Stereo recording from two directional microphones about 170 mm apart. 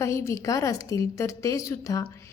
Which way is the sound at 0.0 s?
15° left (ahead or behind).